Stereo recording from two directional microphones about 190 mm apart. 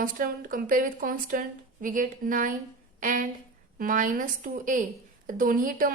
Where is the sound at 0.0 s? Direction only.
45° right (ahead or behind).